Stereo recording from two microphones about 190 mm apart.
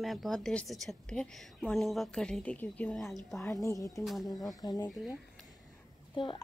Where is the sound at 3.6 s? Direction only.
15° left (ahead or behind).